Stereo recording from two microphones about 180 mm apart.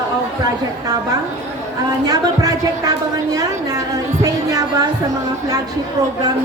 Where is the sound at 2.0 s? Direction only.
20° right (ahead or behind).